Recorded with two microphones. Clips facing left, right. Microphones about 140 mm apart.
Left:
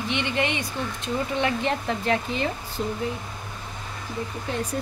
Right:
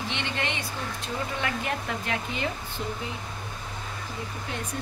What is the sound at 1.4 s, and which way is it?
Speech, 30° left (ahead or behind).